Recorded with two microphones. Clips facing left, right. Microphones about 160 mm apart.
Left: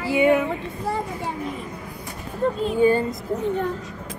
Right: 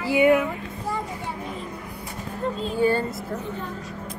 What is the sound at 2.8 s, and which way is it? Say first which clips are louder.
Speech: left 3 dB; 15° left (ahead or behind).